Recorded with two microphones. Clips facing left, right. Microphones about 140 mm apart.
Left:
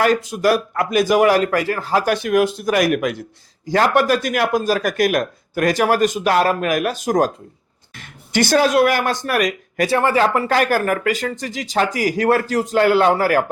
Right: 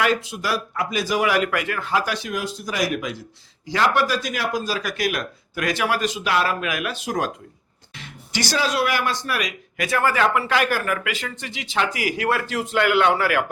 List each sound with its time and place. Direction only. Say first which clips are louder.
0.0 s speech: left 6 dB; 45° left (ahead or behind)
3.7 s speech: left 5 dB; 45° left (ahead or behind)
9.8 s speech: left 4 dB; 30° left (ahead or behind)